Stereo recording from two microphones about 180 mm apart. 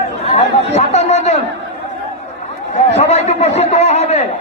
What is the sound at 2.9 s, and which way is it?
A man's voice, 35° left (ahead or behind).